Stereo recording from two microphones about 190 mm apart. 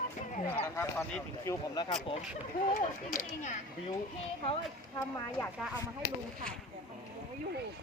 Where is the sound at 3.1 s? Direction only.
40° left (ahead or behind).